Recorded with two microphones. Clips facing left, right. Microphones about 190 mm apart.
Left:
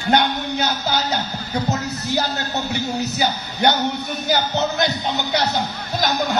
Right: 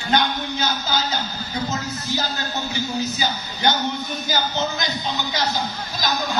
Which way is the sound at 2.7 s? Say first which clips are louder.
Left 2 dB; 60° left (ahead or behind).